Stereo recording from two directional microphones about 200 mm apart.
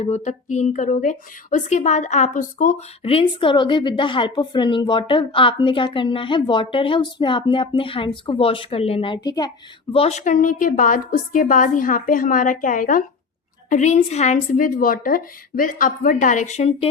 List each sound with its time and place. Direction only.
0.0 s a woman's voice: 35° left (ahead or behind)
9.9 s a woman's voice: 30° left (ahead or behind)